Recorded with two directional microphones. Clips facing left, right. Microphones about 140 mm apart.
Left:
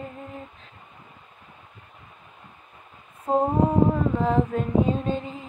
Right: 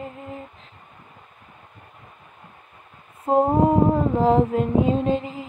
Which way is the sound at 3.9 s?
30° right (ahead or behind).